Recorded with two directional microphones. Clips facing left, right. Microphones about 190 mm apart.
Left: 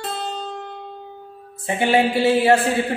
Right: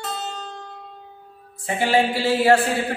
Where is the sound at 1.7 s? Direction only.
20° left (ahead or behind).